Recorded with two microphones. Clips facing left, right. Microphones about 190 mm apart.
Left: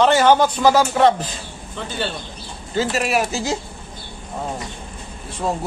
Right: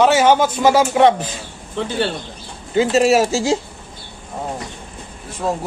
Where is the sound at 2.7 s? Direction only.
25° right (ahead or behind).